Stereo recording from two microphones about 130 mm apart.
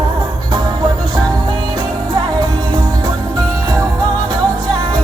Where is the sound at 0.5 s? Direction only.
35° right (ahead or behind).